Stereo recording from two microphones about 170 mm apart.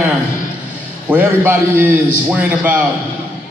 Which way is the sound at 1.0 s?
10° right (ahead or behind).